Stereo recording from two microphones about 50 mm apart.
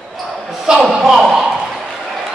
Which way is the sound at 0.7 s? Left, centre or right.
Centre.